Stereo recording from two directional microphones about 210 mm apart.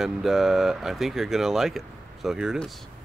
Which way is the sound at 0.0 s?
Centre (ahead or behind).